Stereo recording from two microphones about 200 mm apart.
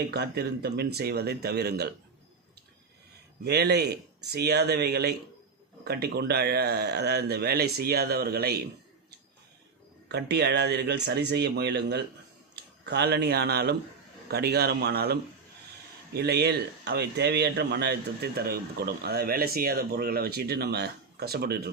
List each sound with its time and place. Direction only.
0.1 s speech: 55° right (ahead or behind)
3.4 s speech: 55° right (ahead or behind)
10.1 s speech: 55° right (ahead or behind)